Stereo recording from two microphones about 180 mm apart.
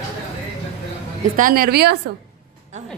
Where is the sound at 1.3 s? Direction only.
50° right (ahead or behind).